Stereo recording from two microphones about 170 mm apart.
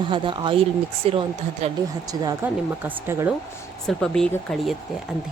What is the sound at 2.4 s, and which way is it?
Speech, 15° right (ahead or behind).